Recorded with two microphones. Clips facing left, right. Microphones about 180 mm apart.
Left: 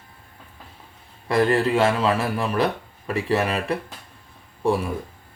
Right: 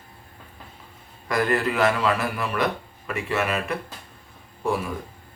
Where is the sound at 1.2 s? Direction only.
30° left (ahead or behind).